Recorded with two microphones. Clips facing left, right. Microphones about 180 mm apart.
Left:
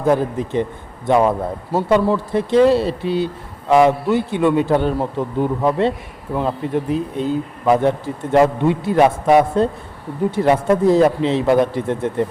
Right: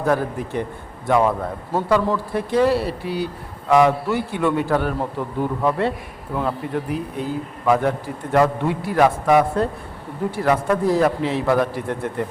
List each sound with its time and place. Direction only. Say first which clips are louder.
0.0 s speech: left 4 dB; 20° left (ahead or behind)
2.3 s speech: left 5 dB; 25° left (ahead or behind)